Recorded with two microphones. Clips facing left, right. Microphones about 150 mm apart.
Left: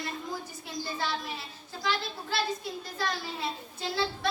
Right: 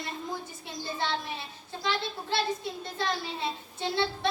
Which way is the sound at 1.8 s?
25° right (ahead or behind).